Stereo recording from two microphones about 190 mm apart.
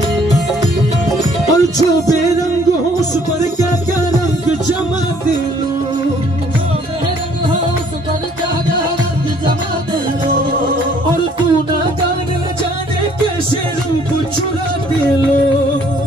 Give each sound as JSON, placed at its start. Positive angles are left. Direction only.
{"t": 1.5, "sound": "music", "side_deg": 20}